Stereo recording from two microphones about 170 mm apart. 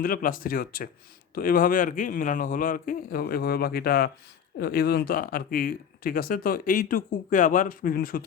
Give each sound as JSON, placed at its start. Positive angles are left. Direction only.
{"t": 0.0, "sound": "speech", "side_deg": 55}